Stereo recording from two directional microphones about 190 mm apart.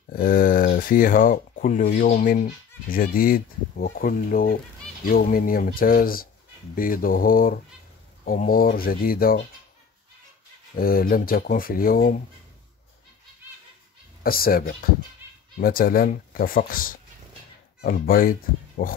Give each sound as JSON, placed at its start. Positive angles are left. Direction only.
{"t": 0.1, "sound": "speech", "side_deg": 50}
{"t": 10.7, "sound": "speech", "side_deg": 50}
{"t": 14.2, "sound": "speech", "side_deg": 50}